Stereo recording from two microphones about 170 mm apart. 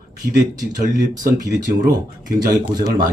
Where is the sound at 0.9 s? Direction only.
20° right (ahead or behind).